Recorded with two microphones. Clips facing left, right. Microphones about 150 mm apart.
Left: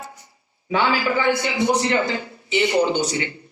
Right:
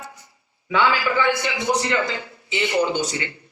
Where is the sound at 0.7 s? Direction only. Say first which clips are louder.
Even; 20° left (ahead or behind).